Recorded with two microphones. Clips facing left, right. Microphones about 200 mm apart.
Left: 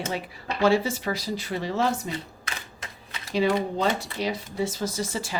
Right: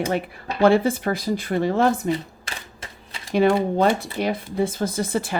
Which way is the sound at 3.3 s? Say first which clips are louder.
Right 5 dB; 55° right (ahead or behind).